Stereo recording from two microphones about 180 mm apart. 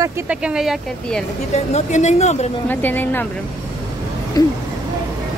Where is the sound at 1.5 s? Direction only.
40° left (ahead or behind).